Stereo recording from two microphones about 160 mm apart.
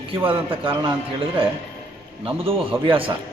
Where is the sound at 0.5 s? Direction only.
30° right (ahead or behind).